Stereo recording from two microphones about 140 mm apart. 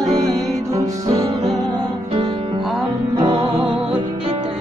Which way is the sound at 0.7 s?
25° right (ahead or behind).